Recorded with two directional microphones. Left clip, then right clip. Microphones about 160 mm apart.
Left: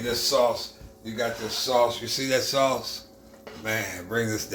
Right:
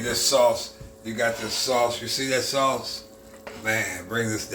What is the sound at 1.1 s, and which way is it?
Speech, 20° left (ahead or behind).